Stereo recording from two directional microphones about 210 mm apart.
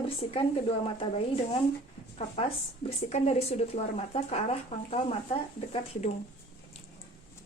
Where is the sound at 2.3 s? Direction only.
30° left (ahead or behind).